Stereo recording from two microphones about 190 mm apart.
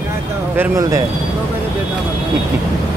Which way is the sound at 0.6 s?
15° right (ahead or behind).